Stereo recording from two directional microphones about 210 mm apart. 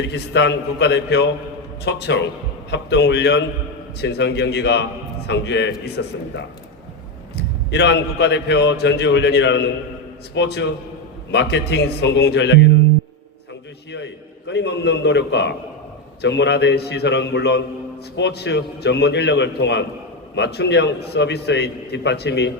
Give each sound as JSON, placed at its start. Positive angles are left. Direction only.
{"t": 0.1, "sound": "a man's voice", "side_deg": 55}
{"t": 7.3, "sound": "a man's voice", "side_deg": 55}
{"t": 13.9, "sound": "a man's voice", "side_deg": 55}